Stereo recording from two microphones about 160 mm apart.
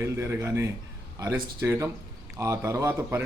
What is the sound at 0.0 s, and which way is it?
A man's voice, 15° right (ahead or behind).